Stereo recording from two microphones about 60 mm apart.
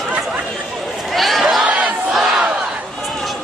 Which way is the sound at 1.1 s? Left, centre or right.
Centre.